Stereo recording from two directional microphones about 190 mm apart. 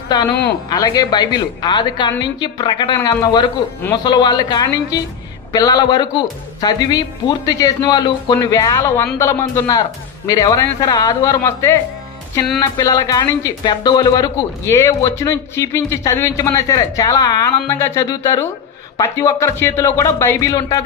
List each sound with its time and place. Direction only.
0.1 s a woman's voice: 20° left (ahead or behind)